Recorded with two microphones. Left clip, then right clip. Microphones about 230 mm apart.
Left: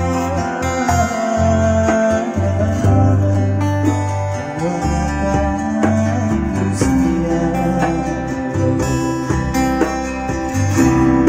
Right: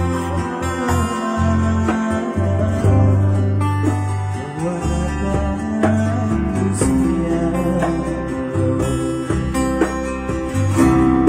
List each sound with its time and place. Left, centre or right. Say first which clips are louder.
0.9 s music: left 5 dB; left
10.8 s music: left 1 dB; left